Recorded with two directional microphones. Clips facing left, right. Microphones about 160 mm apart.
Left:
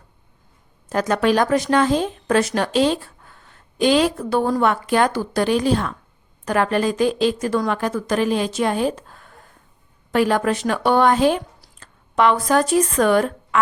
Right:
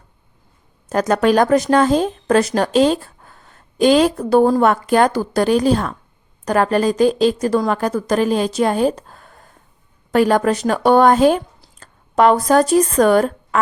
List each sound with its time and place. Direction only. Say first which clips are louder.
0.9 s a woman's voice: right 3 dB; 40° right (ahead or behind)